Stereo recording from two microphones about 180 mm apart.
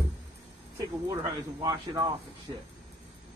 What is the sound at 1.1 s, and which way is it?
Speech, 25° right (ahead or behind).